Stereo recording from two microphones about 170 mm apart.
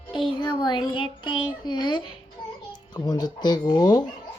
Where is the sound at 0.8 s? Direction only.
30° left (ahead or behind).